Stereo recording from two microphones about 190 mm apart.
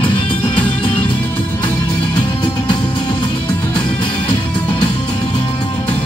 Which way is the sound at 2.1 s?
25° left (ahead or behind).